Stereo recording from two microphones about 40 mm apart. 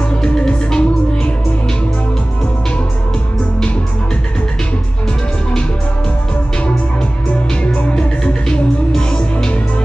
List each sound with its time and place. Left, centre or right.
0.1 s music: left
7.6 s music: left
7.9 s music: centre